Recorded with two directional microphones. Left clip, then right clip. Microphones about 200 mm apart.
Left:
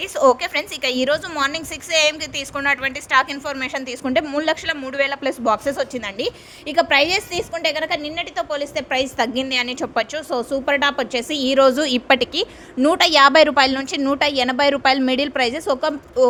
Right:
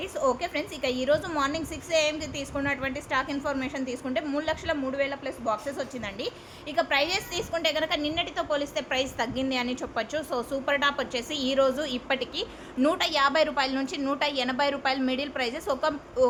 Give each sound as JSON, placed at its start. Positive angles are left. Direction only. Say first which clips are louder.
{"t": 0.2, "sound": "a woman's voice", "louder": "left 11 dB", "side_deg": 55}